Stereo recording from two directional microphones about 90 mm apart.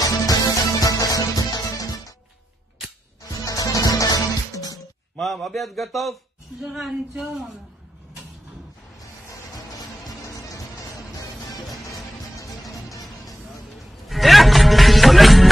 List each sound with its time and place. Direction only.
0.0 s music: 45° left (ahead or behind)
3.4 s music: 40° left (ahead or behind)
5.2 s a man's voice: centre (ahead or behind)
10.0 s music: 40° left (ahead or behind)
12.4 s music: 40° left (ahead or behind)
14.0 s music: centre (ahead or behind)